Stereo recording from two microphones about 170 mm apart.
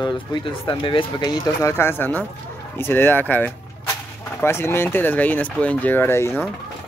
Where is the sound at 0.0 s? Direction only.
25° left (ahead or behind).